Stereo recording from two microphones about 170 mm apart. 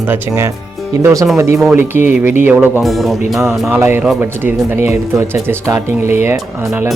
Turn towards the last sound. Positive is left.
turn(degrees=-15)  # may be behind; listen again after turning